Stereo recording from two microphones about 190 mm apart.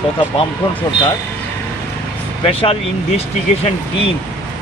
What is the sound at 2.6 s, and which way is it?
Speech, 30° left (ahead or behind).